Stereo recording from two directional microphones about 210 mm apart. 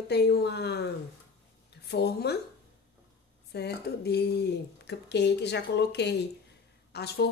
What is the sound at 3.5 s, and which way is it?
Speech, 50° left (ahead or behind).